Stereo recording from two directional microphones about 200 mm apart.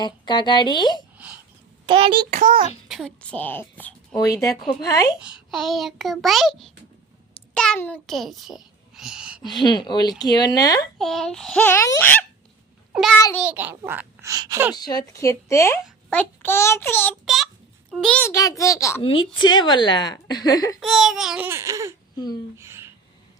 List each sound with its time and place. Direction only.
0.0 s a woman's voice: 20° left (ahead or behind)
1.9 s a child's voice: 25° right (ahead or behind)
2.3 s a child's voice: 45° right (ahead or behind)
2.9 s a child's voice: 5° left (ahead or behind)
5.2 s a child's voice: 5° right (ahead or behind)
9.5 s a woman's voice: 20° left (ahead or behind)
10.9 s a child's voice: centre (ahead or behind)
12.9 s a child's voice: centre (ahead or behind); by 14.7 s 15° right (ahead or behind)
14.8 s a child's voice: 20° left (ahead or behind)
20.8 s a child's voice: centre (ahead or behind)
22.1 s speech: 20° left (ahead or behind)
22.5 s a sound: 15° right (ahead or behind)